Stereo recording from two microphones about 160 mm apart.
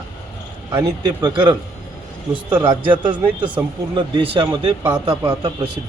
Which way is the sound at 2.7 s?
30° right (ahead or behind).